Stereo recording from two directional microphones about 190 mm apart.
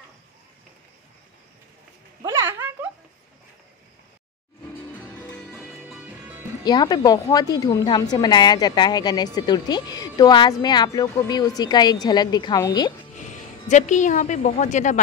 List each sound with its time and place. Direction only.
2.4 s a sound: 10° right (ahead or behind)
4.9 s music: 5° left (ahead or behind)
6.6 s a woman's voice: 20° left (ahead or behind)
13.7 s a woman's voice: 40° left (ahead or behind)